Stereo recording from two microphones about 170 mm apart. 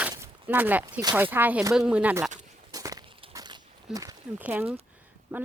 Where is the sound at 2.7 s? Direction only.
20° right (ahead or behind).